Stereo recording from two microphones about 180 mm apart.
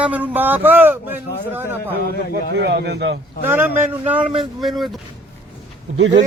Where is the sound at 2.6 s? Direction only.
70° right (ahead or behind).